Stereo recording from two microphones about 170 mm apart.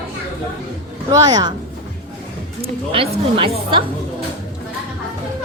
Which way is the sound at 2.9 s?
30° right (ahead or behind).